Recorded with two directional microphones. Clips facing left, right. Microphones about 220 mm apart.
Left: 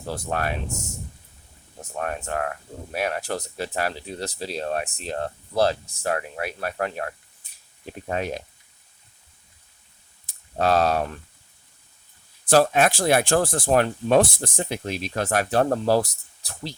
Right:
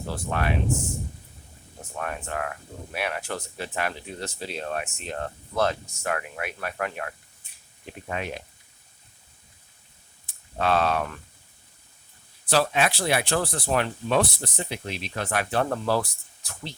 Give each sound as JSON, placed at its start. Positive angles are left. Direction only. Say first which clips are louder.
{"t": 0.1, "sound": "speech", "louder": "left 1 dB", "side_deg": 40}
{"t": 2.0, "sound": "speech", "louder": "left 4 dB", "side_deg": 40}
{"t": 10.2, "sound": "speech", "louder": "left 3 dB", "side_deg": 40}
{"t": 12.5, "sound": "speech", "louder": "left 5 dB", "side_deg": 45}